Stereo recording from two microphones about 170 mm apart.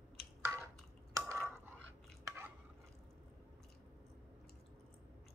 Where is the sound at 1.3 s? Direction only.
15° right (ahead or behind).